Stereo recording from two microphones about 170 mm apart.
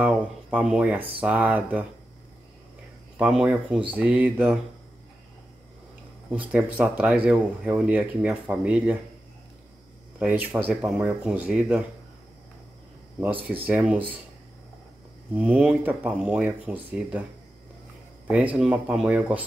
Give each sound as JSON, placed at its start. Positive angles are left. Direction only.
{"t": 0.0, "sound": "a sound", "side_deg": -10}
{"t": 1.2, "sound": "speech", "side_deg": -10}
{"t": 3.2, "sound": "speech", "side_deg": -10}
{"t": 6.3, "sound": "speech", "side_deg": -10}
{"t": 10.1, "sound": "speech", "side_deg": -10}
{"t": 13.2, "sound": "speech", "side_deg": -10}
{"t": 15.3, "sound": "speech", "side_deg": -10}
{"t": 18.2, "sound": "speech", "side_deg": -5}